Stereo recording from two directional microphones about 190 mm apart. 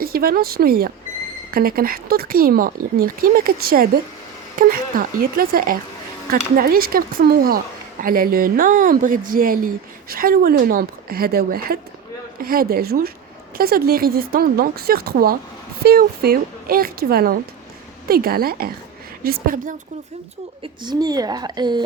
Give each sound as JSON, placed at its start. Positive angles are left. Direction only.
{"t": 0.0, "sound": "speech", "side_deg": -50}
{"t": 20.8, "sound": "speech", "side_deg": -20}